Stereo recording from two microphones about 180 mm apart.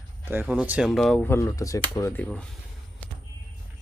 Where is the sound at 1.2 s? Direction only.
15° left (ahead or behind).